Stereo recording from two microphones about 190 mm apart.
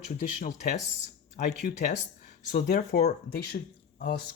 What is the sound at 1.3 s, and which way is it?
Speech, 45° left (ahead or behind).